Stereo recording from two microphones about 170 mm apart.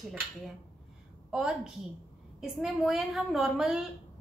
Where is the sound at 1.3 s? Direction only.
5° right (ahead or behind).